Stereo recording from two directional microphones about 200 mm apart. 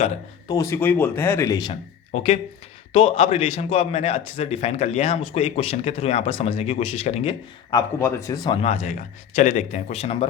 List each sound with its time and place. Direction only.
0.4 s speech: 15° left (ahead or behind)
2.1 s a man's voice: 30° left (ahead or behind)
8.6 s a man's voice: 35° left (ahead or behind)